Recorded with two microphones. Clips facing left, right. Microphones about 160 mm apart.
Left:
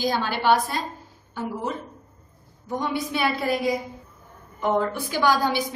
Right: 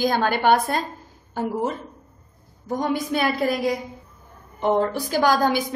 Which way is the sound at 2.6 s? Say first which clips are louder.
Right 3 dB; 45° right (ahead or behind).